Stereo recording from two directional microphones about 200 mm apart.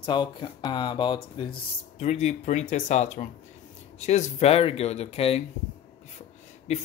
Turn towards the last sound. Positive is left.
turn(degrees=35)  # may be behind; listen again after turning